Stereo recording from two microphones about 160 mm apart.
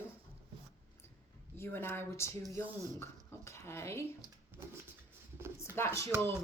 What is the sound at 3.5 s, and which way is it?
Speech, 15° left (ahead or behind).